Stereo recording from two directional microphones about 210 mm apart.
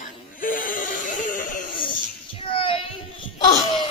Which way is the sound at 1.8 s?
25° left (ahead or behind).